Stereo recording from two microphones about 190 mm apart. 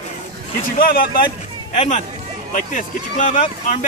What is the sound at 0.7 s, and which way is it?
Speech, 50° left (ahead or behind).